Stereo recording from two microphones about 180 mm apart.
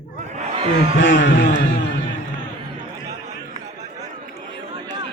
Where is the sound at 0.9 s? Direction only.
90° left.